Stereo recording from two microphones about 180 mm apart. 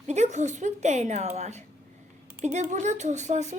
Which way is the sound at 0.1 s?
40° right (ahead or behind).